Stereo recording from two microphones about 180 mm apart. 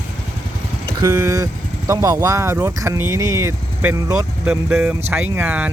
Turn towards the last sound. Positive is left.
turn(degrees=-10)  # may be behind; listen again after turning